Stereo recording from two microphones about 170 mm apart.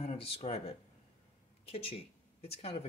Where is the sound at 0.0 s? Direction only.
35° left (ahead or behind).